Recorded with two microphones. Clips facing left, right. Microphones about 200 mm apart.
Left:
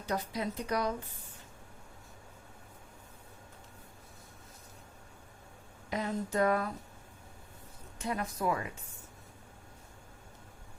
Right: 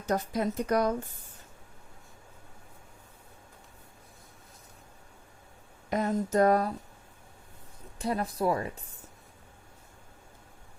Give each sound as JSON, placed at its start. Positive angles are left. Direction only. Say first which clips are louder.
{"t": 0.0, "sound": "a woman's voice", "louder": "right 6 dB", "side_deg": -45}
{"t": 5.9, "sound": "a woman's voice", "louder": "right 6 dB", "side_deg": -45}
{"t": 7.9, "sound": "speech", "louder": "right 5 dB", "side_deg": -35}